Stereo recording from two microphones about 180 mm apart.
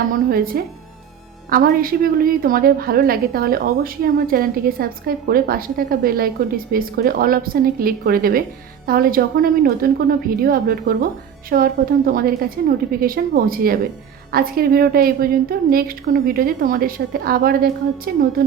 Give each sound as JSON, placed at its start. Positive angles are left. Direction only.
{"t": 0.3, "sound": "a woman's voice", "side_deg": -55}